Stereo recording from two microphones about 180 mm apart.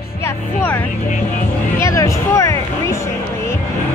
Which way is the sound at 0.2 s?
15° left (ahead or behind).